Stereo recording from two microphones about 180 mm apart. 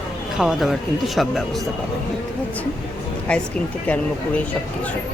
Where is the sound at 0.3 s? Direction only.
Centre (ahead or behind).